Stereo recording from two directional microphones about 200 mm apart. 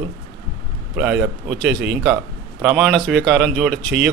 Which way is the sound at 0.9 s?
5° right (ahead or behind).